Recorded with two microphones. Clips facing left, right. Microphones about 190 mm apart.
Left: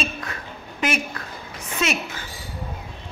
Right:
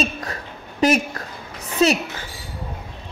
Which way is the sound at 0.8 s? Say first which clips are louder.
Right 7 dB; 40° right (ahead or behind).